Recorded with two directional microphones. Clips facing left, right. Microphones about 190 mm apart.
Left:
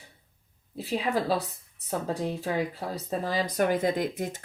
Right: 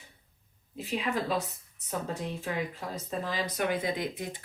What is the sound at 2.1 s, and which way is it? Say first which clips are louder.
Speech: left 5 dB; 35° left (ahead or behind).